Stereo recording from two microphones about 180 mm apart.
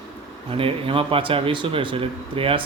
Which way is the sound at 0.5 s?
30° right (ahead or behind).